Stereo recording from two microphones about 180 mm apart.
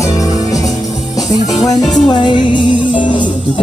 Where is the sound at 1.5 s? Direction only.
40° left (ahead or behind).